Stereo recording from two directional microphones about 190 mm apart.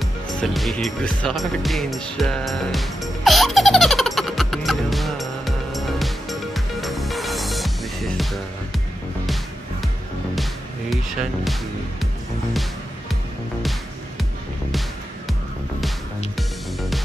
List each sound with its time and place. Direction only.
0.0 s music: centre (ahead or behind)
10.9 s speech: centre (ahead or behind)
13.1 s music: centre (ahead or behind)
16.3 s music: centre (ahead or behind)